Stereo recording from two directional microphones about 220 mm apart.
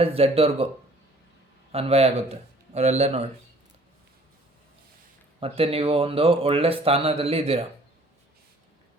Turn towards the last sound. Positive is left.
turn(degrees=-25)  # may be behind; listen again after turning